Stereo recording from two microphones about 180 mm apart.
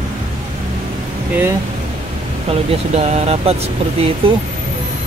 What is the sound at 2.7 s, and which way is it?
Speech, 35° right (ahead or behind).